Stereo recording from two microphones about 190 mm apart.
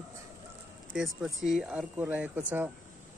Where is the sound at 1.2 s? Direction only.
5° right (ahead or behind).